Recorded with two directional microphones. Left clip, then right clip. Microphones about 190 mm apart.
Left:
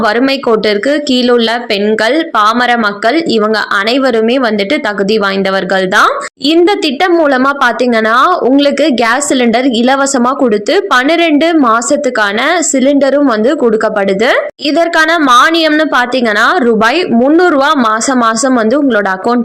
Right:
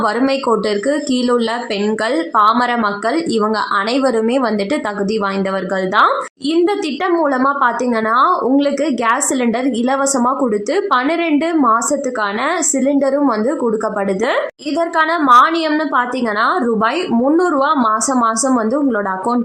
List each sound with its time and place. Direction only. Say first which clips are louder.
0.0 s a woman's voice: left 5 dB; 15° left (ahead or behind)
14.8 s a woman's voice: left 6 dB; 20° left (ahead or behind)